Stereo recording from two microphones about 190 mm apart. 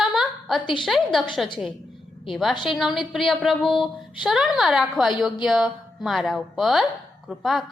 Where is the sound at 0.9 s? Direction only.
Centre (ahead or behind).